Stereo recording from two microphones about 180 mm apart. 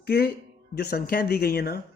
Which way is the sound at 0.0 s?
60° left (ahead or behind).